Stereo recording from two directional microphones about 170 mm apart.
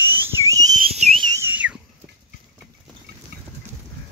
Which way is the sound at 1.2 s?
20° right (ahead or behind).